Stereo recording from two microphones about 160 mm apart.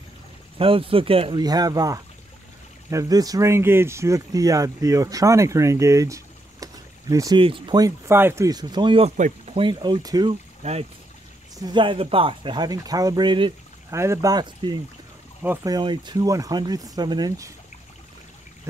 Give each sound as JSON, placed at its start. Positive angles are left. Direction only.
{"t": 0.6, "sound": "speech", "side_deg": -35}
{"t": 1.4, "sound": "speech", "side_deg": -25}
{"t": 9.1, "sound": "speech", "side_deg": -50}
{"t": 9.6, "sound": "speech", "side_deg": -30}
{"t": 10.6, "sound": "speech", "side_deg": -40}
{"t": 11.5, "sound": "speech", "side_deg": -25}
{"t": 13.9, "sound": "speech", "side_deg": -15}
{"t": 15.4, "sound": "speech", "side_deg": -10}
{"t": 15.7, "sound": "speech", "side_deg": -30}